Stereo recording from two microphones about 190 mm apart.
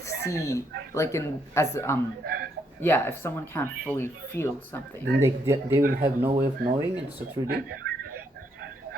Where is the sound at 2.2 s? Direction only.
50° right (ahead or behind).